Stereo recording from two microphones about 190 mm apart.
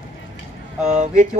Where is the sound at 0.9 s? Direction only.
40° right (ahead or behind).